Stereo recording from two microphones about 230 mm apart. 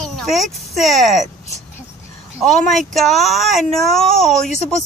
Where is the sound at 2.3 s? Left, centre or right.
Centre.